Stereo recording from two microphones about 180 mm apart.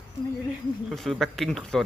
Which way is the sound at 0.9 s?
Centre (ahead or behind).